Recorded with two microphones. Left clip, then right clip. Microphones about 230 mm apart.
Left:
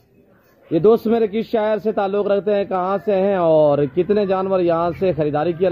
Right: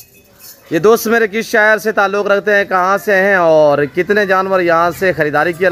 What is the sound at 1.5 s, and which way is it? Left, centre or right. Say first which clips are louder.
Speech: right 8 dB; right.